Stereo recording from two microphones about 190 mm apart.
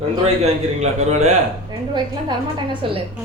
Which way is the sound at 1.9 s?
25° right (ahead or behind).